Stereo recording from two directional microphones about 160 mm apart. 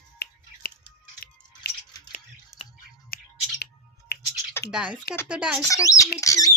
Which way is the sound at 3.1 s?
65° left (ahead or behind).